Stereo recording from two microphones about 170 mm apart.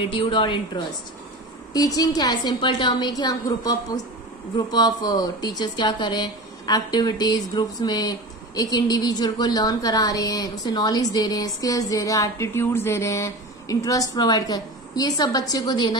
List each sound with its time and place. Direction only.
0.1 s speech: 30° left (ahead or behind)
1.7 s speech: 20° left (ahead or behind)